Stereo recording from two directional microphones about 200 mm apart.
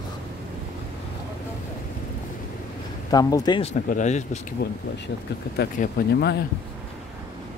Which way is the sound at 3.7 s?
40° left (ahead or behind).